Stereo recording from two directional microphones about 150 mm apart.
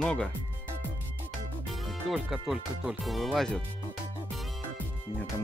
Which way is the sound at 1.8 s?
Centre (ahead or behind).